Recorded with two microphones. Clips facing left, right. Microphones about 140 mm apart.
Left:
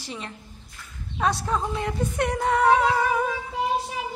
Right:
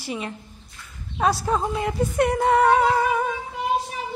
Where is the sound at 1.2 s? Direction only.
5° right (ahead or behind).